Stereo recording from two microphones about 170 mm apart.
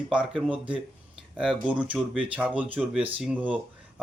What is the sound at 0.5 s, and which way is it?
Speech, 10° right (ahead or behind).